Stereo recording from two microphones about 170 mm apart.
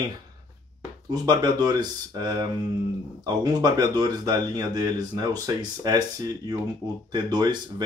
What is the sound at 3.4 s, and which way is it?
Speech, 25° right (ahead or behind).